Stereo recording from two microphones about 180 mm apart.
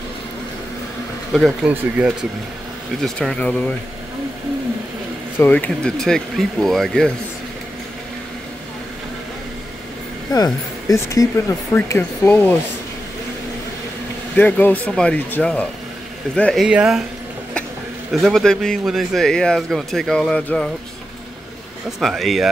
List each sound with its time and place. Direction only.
1.3 s a man's voice: centre (ahead or behind)
1.7 s speech: 10° right (ahead or behind)
3.0 s speech: 5° left (ahead or behind)
5.4 s a man's voice: 10° left (ahead or behind)
10.3 s speech: 20° left (ahead or behind)
14.3 s speech: 10° left (ahead or behind)
16.6 s a man's voice: 5° right (ahead or behind)
18.2 s a man's voice: 5° left (ahead or behind)
22.0 s a man's voice: centre (ahead or behind)